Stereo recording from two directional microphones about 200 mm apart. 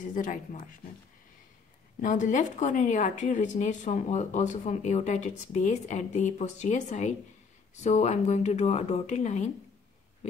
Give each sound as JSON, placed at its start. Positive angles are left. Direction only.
{"t": 0.0, "sound": "speech", "side_deg": 40}
{"t": 2.0, "sound": "speech", "side_deg": 40}